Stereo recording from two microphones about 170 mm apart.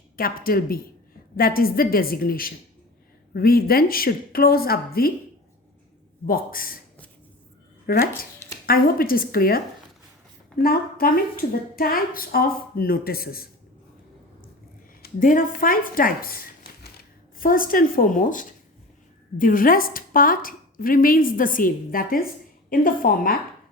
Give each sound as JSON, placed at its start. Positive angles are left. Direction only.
{"t": 0.2, "sound": "a woman's voice", "side_deg": 60}
{"t": 6.2, "sound": "a woman's voice", "side_deg": 55}
{"t": 7.9, "sound": "speech", "side_deg": 60}
{"t": 10.6, "sound": "a woman's voice", "side_deg": 60}
{"t": 15.0, "sound": "a woman's voice", "side_deg": 55}